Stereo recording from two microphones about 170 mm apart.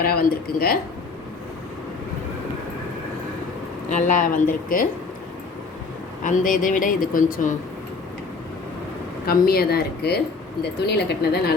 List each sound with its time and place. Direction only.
0.0 s speech: 65° left (ahead or behind)
3.8 s speech: 50° left (ahead or behind)
6.2 s speech: 50° left (ahead or behind)
9.2 s speech: 60° left (ahead or behind)